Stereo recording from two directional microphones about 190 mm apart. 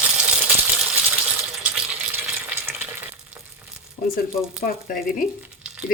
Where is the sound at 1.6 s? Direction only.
5° right (ahead or behind).